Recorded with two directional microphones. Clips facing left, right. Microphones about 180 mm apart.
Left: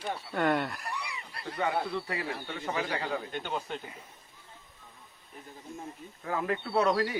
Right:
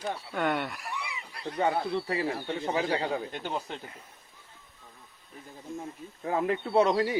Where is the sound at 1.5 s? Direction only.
30° right (ahead or behind).